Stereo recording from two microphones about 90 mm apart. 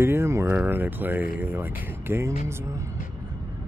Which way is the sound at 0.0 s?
25° right (ahead or behind).